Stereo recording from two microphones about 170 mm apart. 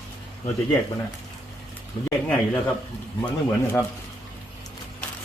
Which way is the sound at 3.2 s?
15° left (ahead or behind).